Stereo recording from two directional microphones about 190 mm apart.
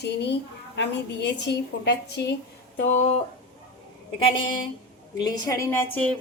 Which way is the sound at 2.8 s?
40° left (ahead or behind).